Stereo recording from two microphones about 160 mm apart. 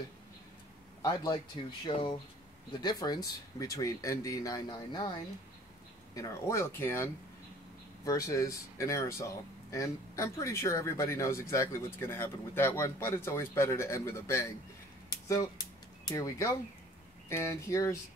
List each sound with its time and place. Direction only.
1.0 s speech: 25° left (ahead or behind)
6.1 s speech: 20° left (ahead or behind)
15.0 s a sound: 20° left (ahead or behind)
16.1 s speech: 20° left (ahead or behind)